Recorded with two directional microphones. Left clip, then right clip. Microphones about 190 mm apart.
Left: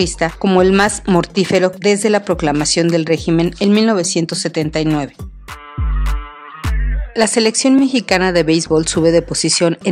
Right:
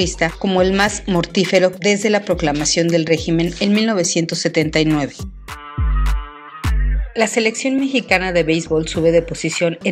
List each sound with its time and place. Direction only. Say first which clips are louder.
0.0 s speech: left 2 dB; 35° left (ahead or behind); by 4.8 s 20° left (ahead or behind)
7.2 s speech: left 3 dB; 40° left (ahead or behind)